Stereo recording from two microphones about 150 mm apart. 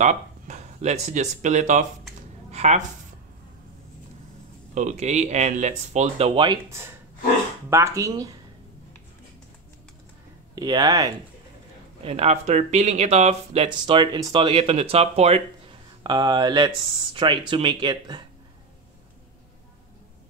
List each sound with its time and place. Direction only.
0.0 s speech: 55° right (ahead or behind)
2.5 s a sound: 45° right (ahead or behind)
4.7 s speech: 50° right (ahead or behind); by 6.6 s 35° right (ahead or behind)
7.7 s speech: 20° right (ahead or behind)
10.5 s speech: 25° right (ahead or behind)
12.0 s speech: 40° right (ahead or behind)
13.7 s speech: 30° right (ahead or behind)
16.0 s speech: 30° right (ahead or behind)